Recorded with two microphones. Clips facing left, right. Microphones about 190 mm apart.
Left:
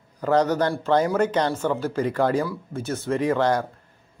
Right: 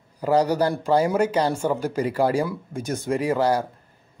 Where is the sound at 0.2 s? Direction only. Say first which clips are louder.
Right 1 dB; 10° right (ahead or behind).